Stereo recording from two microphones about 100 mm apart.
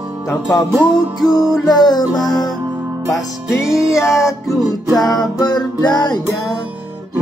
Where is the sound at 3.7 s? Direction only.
30° left (ahead or behind).